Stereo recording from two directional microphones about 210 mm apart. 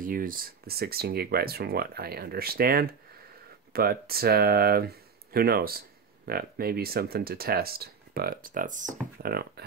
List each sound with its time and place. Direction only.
0.0 s speech: 40° right (ahead or behind)
9.2 s speech: 50° right (ahead or behind)